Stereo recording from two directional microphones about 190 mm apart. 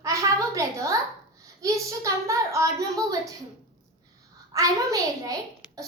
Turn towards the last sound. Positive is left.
turn(degrees=-20)  # may be behind; listen again after turning